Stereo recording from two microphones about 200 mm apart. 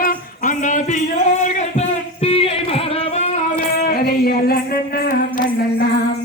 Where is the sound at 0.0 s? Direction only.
40° left (ahead or behind).